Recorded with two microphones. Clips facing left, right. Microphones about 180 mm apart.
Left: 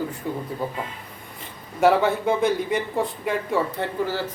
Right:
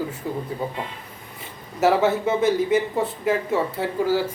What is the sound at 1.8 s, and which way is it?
Speech, 5° right (ahead or behind).